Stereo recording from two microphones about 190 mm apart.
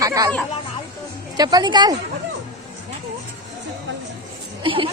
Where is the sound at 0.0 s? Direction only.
20° right (ahead or behind).